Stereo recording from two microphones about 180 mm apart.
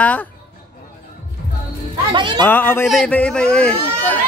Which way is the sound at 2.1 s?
25° right (ahead or behind).